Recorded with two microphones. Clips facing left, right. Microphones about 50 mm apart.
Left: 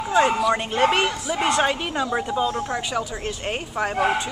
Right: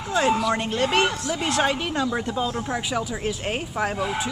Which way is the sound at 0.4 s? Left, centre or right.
Centre.